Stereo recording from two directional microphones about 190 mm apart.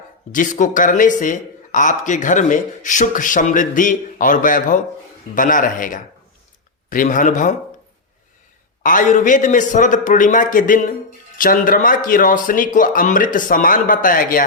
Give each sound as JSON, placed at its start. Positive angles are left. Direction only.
{"t": 0.3, "sound": "speech", "side_deg": 40}
{"t": 8.8, "sound": "speech", "side_deg": 45}